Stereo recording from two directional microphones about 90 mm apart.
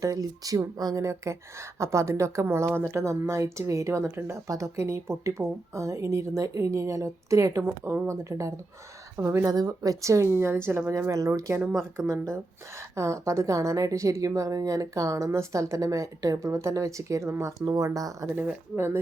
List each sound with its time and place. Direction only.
0.0 s a woman's voice: 40° right (ahead or behind)
9.5 s a woman's voice: 45° right (ahead or behind)
18.3 s speech: 20° right (ahead or behind)